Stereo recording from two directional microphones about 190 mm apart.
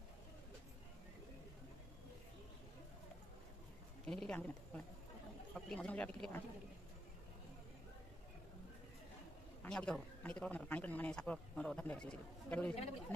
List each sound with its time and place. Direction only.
4.0 s speech: 5° left (ahead or behind)
9.6 s speech: 5° left (ahead or behind)